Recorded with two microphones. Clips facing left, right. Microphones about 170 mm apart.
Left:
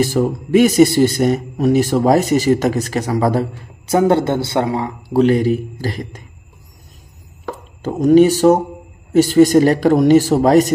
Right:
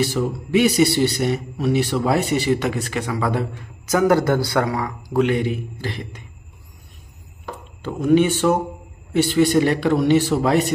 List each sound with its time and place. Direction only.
0.0 s a man's voice: 45° left (ahead or behind)
7.8 s a man's voice: 40° left (ahead or behind)